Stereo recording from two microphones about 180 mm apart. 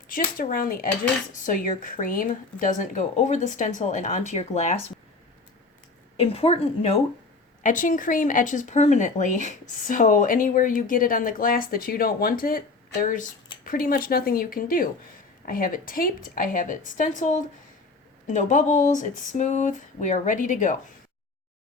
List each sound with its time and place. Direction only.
0.3 s speech: 50° left (ahead or behind)
6.1 s speech: 35° left (ahead or behind)
7.6 s speech: 45° left (ahead or behind)